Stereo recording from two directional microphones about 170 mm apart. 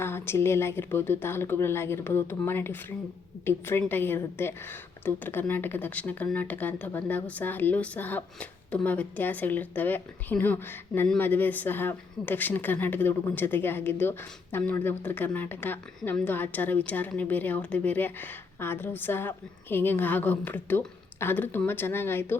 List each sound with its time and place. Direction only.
0.0 s a woman's voice: 15° left (ahead or behind)